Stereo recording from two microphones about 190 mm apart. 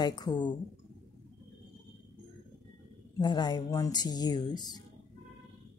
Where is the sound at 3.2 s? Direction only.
25° left (ahead or behind).